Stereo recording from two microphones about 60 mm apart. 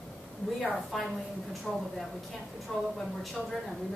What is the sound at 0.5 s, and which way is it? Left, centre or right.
A woman's voice, centre.